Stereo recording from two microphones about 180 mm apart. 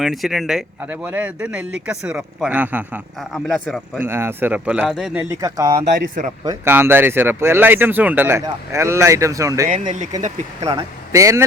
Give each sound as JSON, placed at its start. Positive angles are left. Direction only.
{"t": 0.0, "sound": "speech", "side_deg": 0}
{"t": 3.2, "sound": "speech", "side_deg": 5}
{"t": 3.9, "sound": "speech", "side_deg": -10}
{"t": 5.3, "sound": "speech", "side_deg": -20}
{"t": 10.2, "sound": "speech", "side_deg": -45}
{"t": 10.7, "sound": "speech", "side_deg": -20}